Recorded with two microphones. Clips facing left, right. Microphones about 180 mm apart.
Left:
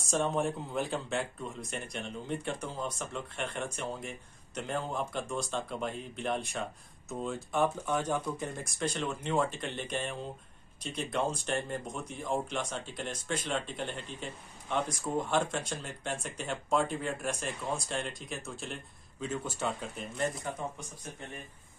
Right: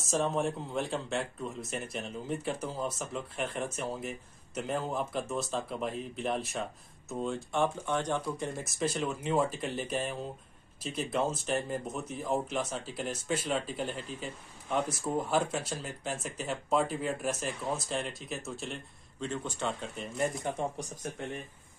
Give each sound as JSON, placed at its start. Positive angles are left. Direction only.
{"t": 0.0, "sound": "speech", "side_deg": 0}
{"t": 20.4, "sound": "speech", "side_deg": -30}